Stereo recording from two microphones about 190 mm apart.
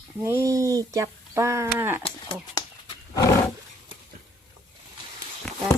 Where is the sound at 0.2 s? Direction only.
10° right (ahead or behind).